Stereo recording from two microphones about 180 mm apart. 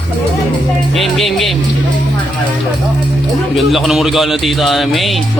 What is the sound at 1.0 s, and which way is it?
Music, centre (ahead or behind).